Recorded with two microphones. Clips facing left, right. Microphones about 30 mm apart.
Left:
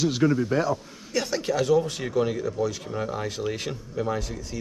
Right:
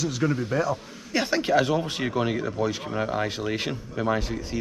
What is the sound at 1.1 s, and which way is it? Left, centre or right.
Speech, right.